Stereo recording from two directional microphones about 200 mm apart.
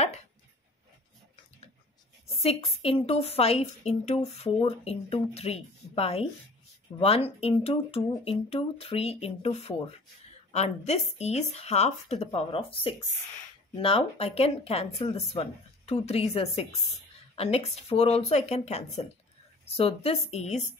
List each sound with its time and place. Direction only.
2.4 s a woman's voice: 30° left (ahead or behind)